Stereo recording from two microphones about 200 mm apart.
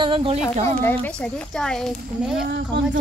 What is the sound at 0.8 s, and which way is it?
Speech, 5° left (ahead or behind).